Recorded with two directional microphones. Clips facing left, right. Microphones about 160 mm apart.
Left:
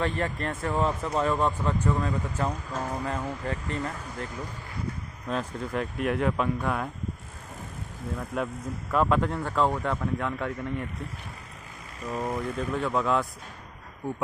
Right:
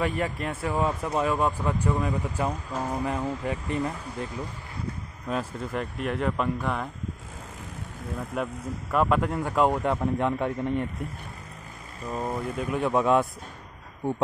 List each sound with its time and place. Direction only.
0.0 s speech: 10° right (ahead or behind)
5.3 s speech: 5° right (ahead or behind)
8.9 s speech: 5° right (ahead or behind); by 10.9 s 20° right (ahead or behind)
12.2 s speech: 10° right (ahead or behind)